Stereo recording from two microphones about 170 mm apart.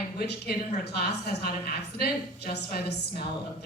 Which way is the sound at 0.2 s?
65° left (ahead or behind).